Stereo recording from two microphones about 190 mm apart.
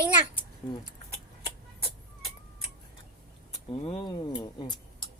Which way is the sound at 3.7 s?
30° left (ahead or behind).